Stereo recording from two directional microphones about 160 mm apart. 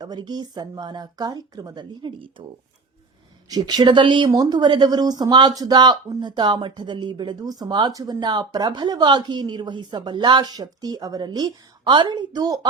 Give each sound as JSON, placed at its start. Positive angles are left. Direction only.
{"t": 0.0, "sound": "speech", "side_deg": -25}
{"t": 3.5, "sound": "speech", "side_deg": -25}